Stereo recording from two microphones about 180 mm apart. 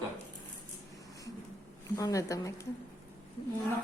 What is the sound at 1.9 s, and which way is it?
Speech, 20° left (ahead or behind).